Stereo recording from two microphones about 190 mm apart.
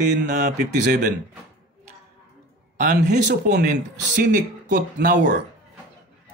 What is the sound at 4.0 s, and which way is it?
A man's voice, 45° right (ahead or behind).